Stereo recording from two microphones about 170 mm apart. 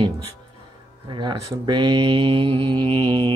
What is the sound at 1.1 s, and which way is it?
Speech, 25° right (ahead or behind).